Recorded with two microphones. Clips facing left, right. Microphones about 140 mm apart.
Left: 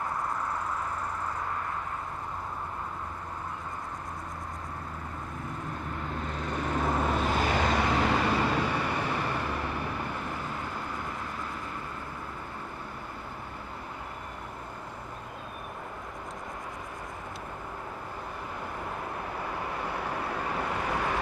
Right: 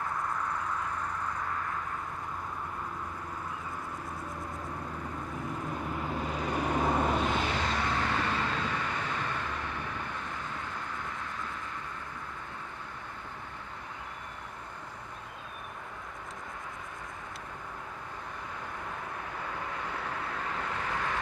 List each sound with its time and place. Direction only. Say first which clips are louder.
6.2 s vehicle: right 1 dB; 5° right (ahead or behind)
7.5 s vehicle: left 5 dB; 65° left (ahead or behind)
7.9 s vehicle: left 5 dB; 10° left (ahead or behind)
19.4 s vehicle: left 3 dB; 10° left (ahead or behind)